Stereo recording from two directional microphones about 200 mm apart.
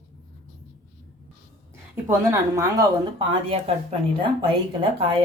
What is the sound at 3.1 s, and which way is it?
Speech, 30° right (ahead or behind).